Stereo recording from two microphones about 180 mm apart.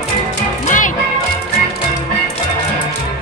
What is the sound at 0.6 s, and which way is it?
Music, 45° left (ahead or behind).